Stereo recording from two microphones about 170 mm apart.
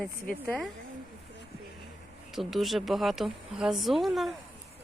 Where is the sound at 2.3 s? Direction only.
Centre (ahead or behind).